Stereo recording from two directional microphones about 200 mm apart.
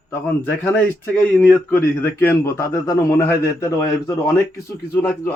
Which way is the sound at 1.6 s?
10° left (ahead or behind).